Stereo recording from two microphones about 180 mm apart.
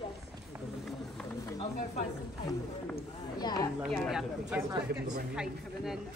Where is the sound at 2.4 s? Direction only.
20° left (ahead or behind).